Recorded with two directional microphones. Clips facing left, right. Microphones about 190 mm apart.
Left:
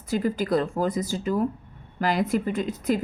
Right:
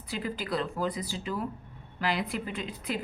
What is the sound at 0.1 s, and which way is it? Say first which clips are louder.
A woman's voice: left 9 dB; 45° left (ahead or behind).